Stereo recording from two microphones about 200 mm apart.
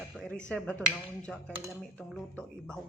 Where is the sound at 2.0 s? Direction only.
5° left (ahead or behind).